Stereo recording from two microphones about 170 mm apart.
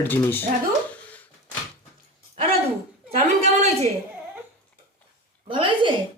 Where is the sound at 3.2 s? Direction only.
40° right (ahead or behind).